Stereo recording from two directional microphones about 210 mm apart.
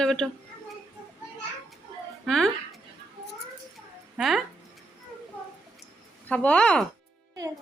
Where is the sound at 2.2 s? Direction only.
Centre (ahead or behind).